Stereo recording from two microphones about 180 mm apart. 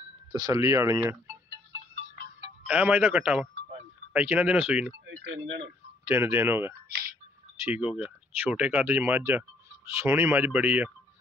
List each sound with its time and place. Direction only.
0.3 s speech: 15° right (ahead or behind)
2.6 s speech: 5° right (ahead or behind)
6.0 s speech: 10° right (ahead or behind)
6.9 s music: 55° right (ahead or behind)
7.6 s speech: 10° right (ahead or behind)